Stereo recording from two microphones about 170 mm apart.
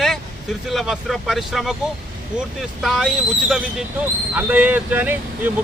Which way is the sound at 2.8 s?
Centre (ahead or behind).